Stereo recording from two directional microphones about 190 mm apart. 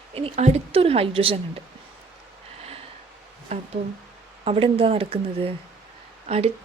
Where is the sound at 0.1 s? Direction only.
30° right (ahead or behind).